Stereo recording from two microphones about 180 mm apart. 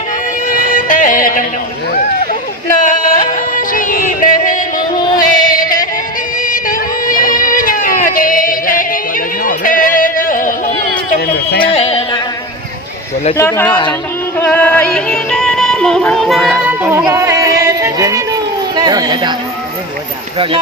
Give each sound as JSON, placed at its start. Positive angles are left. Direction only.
{"t": 0.4, "sound": "music", "side_deg": 50}
{"t": 2.8, "sound": "a sound", "side_deg": 45}
{"t": 5.1, "sound": "music", "side_deg": 50}
{"t": 6.4, "sound": "a sound", "side_deg": 50}
{"t": 11.7, "sound": "music", "side_deg": 30}
{"t": 13.3, "sound": "speech", "side_deg": 15}
{"t": 13.7, "sound": "speech", "side_deg": 25}
{"t": 14.3, "sound": "music", "side_deg": 10}